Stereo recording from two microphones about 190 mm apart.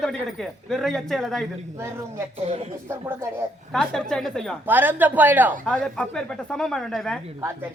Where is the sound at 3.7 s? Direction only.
5° left (ahead or behind).